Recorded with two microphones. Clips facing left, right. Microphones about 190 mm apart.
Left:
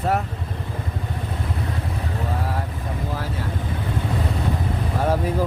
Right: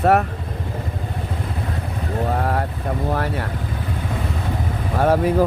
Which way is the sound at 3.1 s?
60° right (ahead or behind).